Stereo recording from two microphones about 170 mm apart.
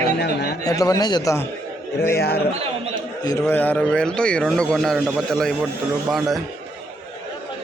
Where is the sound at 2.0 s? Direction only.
70° left (ahead or behind).